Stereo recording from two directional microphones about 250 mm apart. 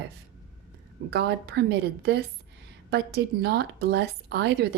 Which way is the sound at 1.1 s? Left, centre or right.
Right.